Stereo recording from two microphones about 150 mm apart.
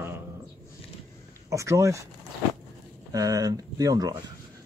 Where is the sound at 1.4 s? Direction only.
20° right (ahead or behind).